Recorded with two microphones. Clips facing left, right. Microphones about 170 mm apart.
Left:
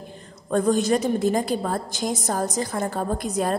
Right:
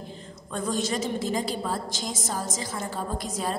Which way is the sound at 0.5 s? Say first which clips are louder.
Left 8 dB; 55° left (ahead or behind).